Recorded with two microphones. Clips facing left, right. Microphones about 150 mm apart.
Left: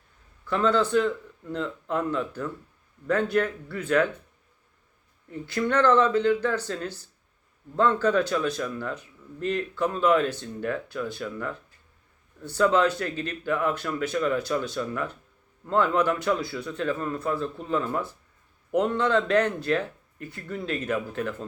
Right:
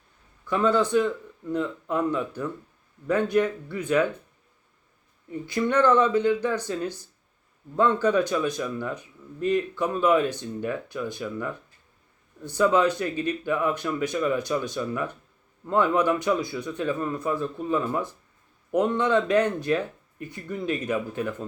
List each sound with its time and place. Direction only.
0.4 s speech: 15° right (ahead or behind)
5.3 s speech: 15° right (ahead or behind)